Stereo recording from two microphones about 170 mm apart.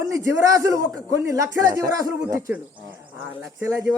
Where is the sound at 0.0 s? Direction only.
20° right (ahead or behind).